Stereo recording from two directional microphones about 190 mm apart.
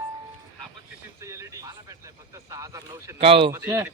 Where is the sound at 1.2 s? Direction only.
15° right (ahead or behind).